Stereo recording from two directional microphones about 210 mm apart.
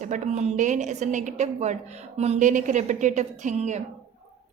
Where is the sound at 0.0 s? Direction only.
35° right (ahead or behind).